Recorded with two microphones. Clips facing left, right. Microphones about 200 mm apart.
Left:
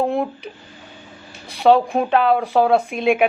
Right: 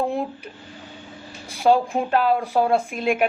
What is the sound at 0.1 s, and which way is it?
Speech, 75° left (ahead or behind).